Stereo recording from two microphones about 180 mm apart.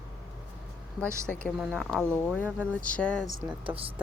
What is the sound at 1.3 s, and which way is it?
Speech, centre (ahead or behind).